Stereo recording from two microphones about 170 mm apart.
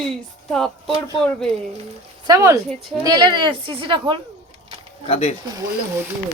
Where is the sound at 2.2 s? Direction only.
20° right (ahead or behind).